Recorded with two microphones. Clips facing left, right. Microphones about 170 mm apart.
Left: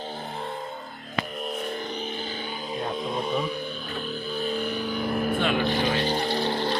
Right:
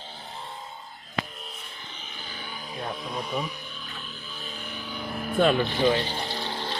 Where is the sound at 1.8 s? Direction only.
40° left (ahead or behind); by 3.7 s 25° left (ahead or behind).